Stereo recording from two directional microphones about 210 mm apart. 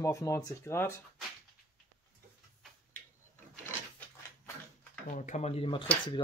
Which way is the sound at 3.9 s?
10° left (ahead or behind).